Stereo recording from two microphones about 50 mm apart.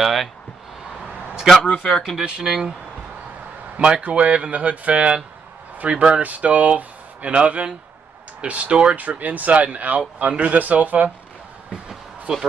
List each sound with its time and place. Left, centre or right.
0.0 s speech: centre
1.9 s speech: centre
2.1 s speech: centre
3.7 s speech: right
9.2 s speech: right
11.9 s a sound: centre